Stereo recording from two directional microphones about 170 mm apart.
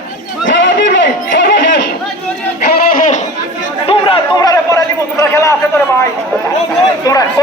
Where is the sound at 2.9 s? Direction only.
50° left (ahead or behind).